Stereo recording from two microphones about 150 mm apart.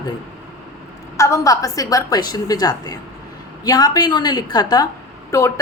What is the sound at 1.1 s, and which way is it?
A woman's voice, 20° left (ahead or behind).